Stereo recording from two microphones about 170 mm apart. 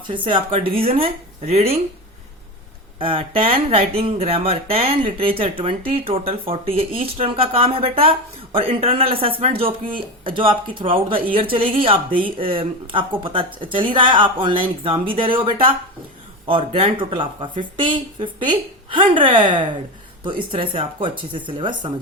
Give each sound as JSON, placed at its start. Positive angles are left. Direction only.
{"t": 0.0, "sound": "speech", "side_deg": -30}
{"t": 3.0, "sound": "a woman's voice", "side_deg": -30}